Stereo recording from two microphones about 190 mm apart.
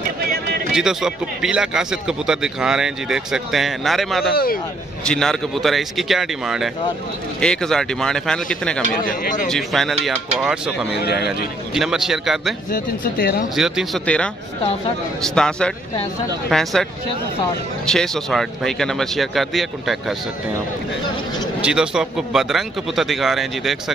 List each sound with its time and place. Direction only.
0.7 s speech: 5° right (ahead or behind)
4.3 s speech: 50° left (ahead or behind)
5.0 s speech: 5° left (ahead or behind)
9.0 s speech: 45° left (ahead or behind)
9.5 s speech: centre (ahead or behind)
11.0 s speech: 55° left (ahead or behind)
11.7 s speech: centre (ahead or behind)
12.7 s speech: 50° left (ahead or behind)
13.6 s speech: centre (ahead or behind)
17.8 s speech: 5° left (ahead or behind)
21.5 s speech: 5° right (ahead or behind)